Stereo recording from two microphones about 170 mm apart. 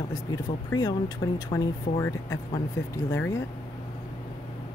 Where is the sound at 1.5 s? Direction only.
20° left (ahead or behind).